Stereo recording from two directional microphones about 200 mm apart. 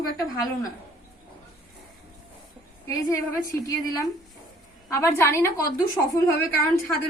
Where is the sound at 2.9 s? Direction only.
15° left (ahead or behind).